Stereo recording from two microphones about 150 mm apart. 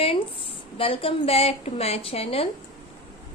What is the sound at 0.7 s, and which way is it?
A woman's voice, 40° left (ahead or behind).